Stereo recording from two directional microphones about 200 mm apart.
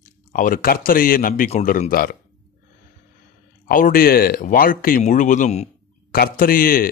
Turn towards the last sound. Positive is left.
turn(degrees=45)  # may be behind; listen again after turning